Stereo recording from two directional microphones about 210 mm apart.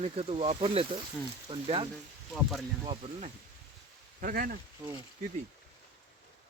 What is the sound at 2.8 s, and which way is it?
Speech, 25° right (ahead or behind).